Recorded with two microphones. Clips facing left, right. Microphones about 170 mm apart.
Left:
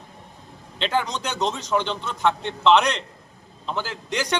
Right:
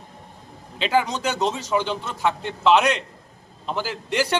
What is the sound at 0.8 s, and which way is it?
A man's voice, 5° right (ahead or behind).